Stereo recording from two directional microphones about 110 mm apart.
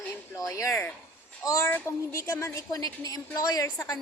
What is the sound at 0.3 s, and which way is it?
Speech, 30° left (ahead or behind).